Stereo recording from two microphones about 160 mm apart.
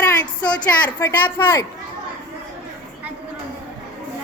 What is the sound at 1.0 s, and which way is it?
Speech, 20° left (ahead or behind).